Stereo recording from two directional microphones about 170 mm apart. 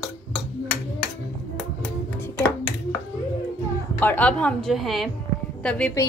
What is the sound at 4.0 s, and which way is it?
Speech, 10° left (ahead or behind).